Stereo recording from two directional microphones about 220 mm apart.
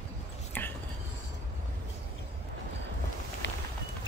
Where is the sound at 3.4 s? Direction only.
55° left (ahead or behind).